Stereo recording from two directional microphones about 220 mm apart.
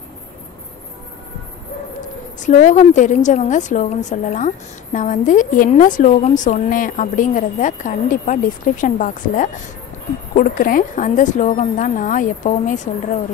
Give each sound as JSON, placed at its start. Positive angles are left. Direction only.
{"t": 2.4, "sound": "a woman's voice", "side_deg": 35}